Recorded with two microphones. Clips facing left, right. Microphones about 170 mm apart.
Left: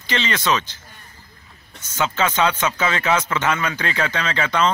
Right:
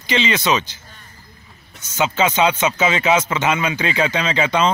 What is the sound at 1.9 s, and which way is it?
A man's voice, 20° right (ahead or behind).